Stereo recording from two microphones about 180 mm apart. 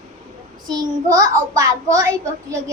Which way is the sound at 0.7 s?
20° right (ahead or behind).